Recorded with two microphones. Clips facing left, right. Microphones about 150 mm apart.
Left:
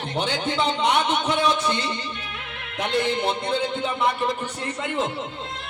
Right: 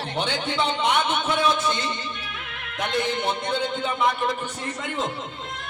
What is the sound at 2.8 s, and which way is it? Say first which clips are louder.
Music: left 2 dB; 30° left (ahead or behind).